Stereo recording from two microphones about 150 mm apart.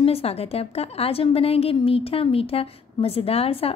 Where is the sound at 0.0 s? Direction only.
40° left (ahead or behind).